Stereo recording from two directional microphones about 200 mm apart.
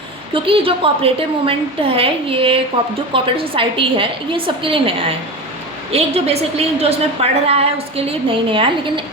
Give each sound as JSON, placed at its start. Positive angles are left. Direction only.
{"t": 0.3, "sound": "a woman's voice", "side_deg": -25}